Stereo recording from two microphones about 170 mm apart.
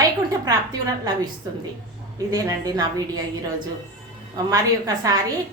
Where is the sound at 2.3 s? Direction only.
20° right (ahead or behind).